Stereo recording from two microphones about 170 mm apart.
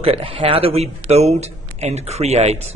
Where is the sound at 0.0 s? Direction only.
35° right (ahead or behind).